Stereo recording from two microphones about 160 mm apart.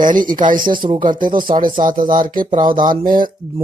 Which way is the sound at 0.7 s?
30° right (ahead or behind).